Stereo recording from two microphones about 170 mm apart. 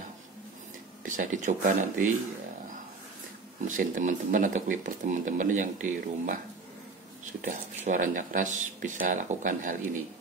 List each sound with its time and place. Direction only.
1.0 s speech: 50° right (ahead or behind)
3.6 s speech: 50° right (ahead or behind)
7.4 s speech: 50° right (ahead or behind)